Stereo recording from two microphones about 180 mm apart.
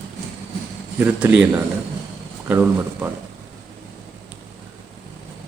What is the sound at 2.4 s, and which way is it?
Speech, 10° right (ahead or behind).